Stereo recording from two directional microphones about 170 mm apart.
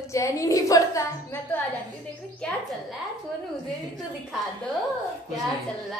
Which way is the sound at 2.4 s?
5° left (ahead or behind).